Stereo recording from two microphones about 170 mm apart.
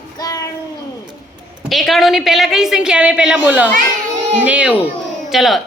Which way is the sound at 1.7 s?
Centre (ahead or behind).